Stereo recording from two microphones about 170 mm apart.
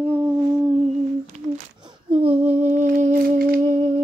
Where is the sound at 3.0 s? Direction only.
55° right (ahead or behind).